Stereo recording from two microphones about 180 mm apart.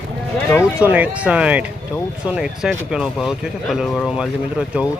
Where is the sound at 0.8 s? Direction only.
10° right (ahead or behind).